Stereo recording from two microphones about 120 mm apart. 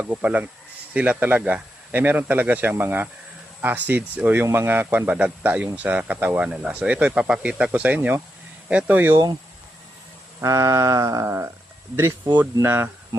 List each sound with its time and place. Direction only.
0.0 s speech: 10° right (ahead or behind)
10.4 s music: 25° right (ahead or behind)